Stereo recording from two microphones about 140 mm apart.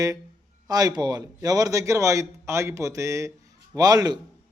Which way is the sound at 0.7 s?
30° right (ahead or behind).